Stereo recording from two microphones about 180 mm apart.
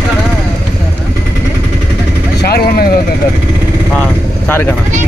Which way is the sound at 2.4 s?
60° left (ahead or behind).